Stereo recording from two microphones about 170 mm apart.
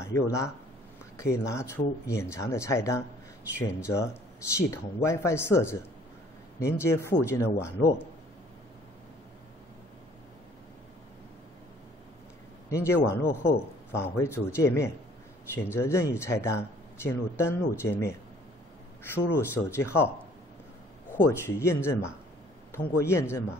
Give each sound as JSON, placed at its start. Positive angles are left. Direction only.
{"t": 0.0, "sound": "speech", "side_deg": 15}
{"t": 12.6, "sound": "a man's voice", "side_deg": 15}
{"t": 21.3, "sound": "speech", "side_deg": 15}